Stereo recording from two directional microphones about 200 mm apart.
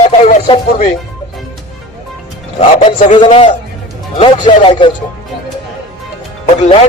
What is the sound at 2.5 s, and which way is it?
Speech, 30° left (ahead or behind).